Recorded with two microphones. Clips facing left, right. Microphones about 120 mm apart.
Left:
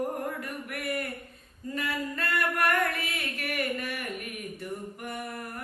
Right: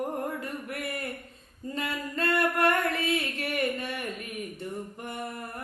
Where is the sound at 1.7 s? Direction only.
25° right (ahead or behind).